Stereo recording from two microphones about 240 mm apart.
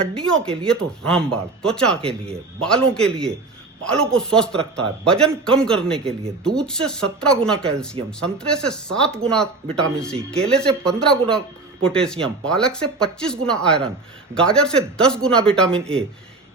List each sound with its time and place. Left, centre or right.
0.0 s speech: centre